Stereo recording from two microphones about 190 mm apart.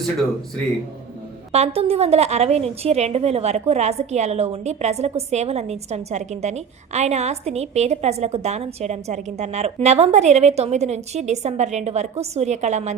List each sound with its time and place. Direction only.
1.5 s a woman's voice: 30° right (ahead or behind)